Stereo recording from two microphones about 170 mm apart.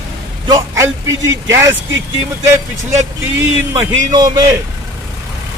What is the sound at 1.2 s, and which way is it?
Speech, 90° right.